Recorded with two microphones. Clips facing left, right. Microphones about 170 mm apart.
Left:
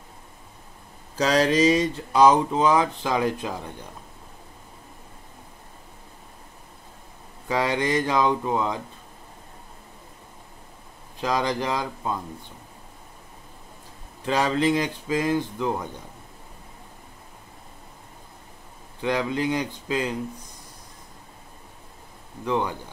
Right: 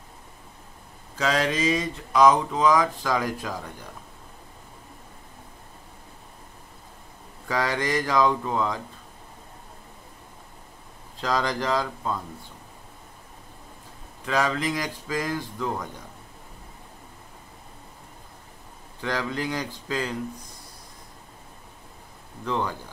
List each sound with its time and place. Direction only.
1.1 s speech: 35° left (ahead or behind)
7.4 s speech: 20° left (ahead or behind)
11.1 s speech: 20° left (ahead or behind)
14.2 s speech: 30° left (ahead or behind)
18.9 s speech: 20° left (ahead or behind)
22.4 s speech: 15° left (ahead or behind)